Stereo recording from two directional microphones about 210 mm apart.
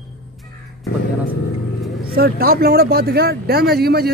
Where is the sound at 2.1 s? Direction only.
45° right (ahead or behind).